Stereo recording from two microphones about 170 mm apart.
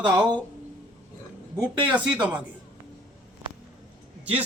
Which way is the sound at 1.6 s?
10° right (ahead or behind).